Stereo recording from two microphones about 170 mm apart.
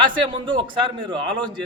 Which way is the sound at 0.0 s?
30° right (ahead or behind).